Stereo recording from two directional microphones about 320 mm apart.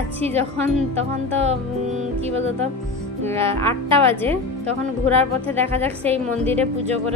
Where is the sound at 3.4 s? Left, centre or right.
Centre.